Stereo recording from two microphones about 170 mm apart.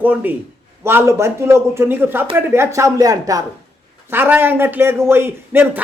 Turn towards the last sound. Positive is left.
turn(degrees=-10)  # may be behind; listen again after turning